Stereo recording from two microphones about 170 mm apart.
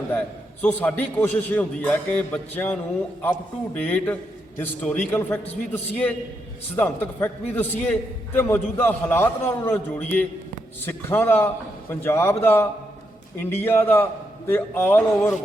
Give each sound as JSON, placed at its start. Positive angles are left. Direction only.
{"t": 0.6, "sound": "a man's voice", "side_deg": 10}
{"t": 3.8, "sound": "a man's voice", "side_deg": 10}